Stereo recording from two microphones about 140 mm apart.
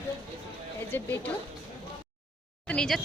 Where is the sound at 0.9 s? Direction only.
15° left (ahead or behind).